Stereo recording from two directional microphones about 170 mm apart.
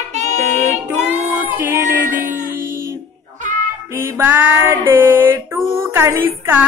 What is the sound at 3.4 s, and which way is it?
Music, 45° right (ahead or behind).